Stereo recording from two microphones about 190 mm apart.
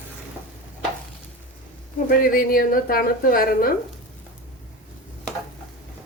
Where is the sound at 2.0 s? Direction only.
50° left (ahead or behind).